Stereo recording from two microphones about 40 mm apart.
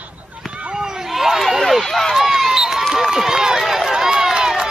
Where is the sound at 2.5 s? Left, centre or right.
Centre.